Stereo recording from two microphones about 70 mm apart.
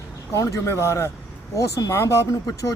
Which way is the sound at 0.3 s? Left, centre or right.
Left.